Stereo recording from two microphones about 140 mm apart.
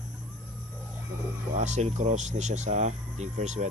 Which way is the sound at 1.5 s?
55° right (ahead or behind).